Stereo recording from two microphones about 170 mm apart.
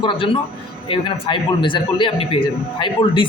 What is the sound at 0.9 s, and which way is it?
A man's voice, 30° left (ahead or behind).